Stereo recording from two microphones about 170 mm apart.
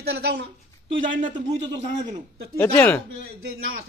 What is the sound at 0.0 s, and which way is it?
Speech, 70° right (ahead or behind).